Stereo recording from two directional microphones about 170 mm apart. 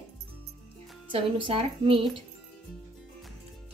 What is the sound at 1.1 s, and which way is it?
Speech, 30° right (ahead or behind).